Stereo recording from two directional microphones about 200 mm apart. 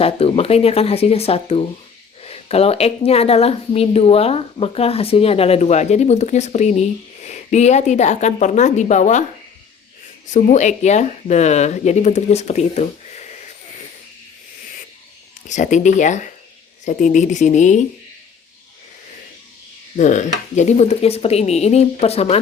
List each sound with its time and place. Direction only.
0.0 s a woman's voice: 30° left (ahead or behind)
10.2 s a woman's voice: 35° left (ahead or behind)
15.4 s a woman's voice: 40° left (ahead or behind)
20.0 s a woman's voice: 40° left (ahead or behind)